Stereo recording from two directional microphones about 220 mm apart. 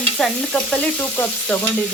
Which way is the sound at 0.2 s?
5° left (ahead or behind).